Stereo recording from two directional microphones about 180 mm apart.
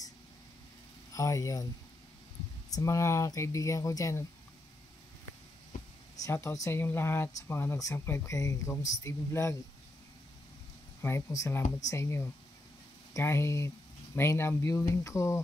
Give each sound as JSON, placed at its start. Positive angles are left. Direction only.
{"t": 1.1, "sound": "speech", "side_deg": 20}
{"t": 2.7, "sound": "speech", "side_deg": 15}
{"t": 6.1, "sound": "speech", "side_deg": 15}
{"t": 11.0, "sound": "speech", "side_deg": 15}